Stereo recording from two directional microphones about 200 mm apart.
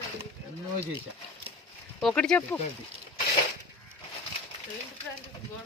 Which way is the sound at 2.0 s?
5° left (ahead or behind).